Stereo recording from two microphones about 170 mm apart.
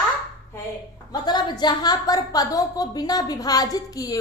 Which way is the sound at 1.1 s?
25° left (ahead or behind).